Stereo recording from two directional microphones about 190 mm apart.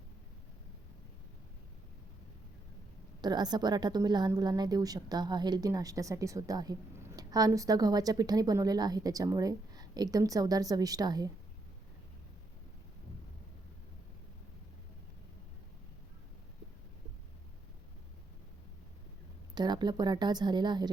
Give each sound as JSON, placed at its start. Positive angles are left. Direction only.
{"t": 3.2, "sound": "a woman's voice", "side_deg": -20}
{"t": 19.5, "sound": "a woman's voice", "side_deg": -20}